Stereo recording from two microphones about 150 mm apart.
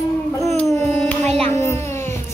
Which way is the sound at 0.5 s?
10° left (ahead or behind).